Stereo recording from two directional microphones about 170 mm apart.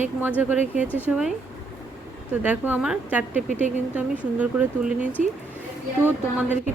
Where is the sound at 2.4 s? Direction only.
10° right (ahead or behind).